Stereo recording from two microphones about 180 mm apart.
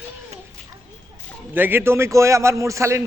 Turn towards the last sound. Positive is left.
turn(degrees=-15)  # may be behind; listen again after turning